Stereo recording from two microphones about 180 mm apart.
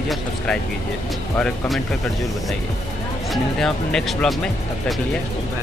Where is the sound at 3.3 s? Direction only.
5° left (ahead or behind).